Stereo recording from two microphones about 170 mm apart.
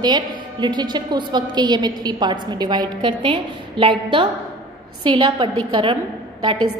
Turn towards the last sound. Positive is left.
turn(degrees=-30)  # may be behind; listen again after turning